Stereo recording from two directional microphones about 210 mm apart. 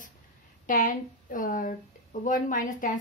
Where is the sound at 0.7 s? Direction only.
40° left (ahead or behind).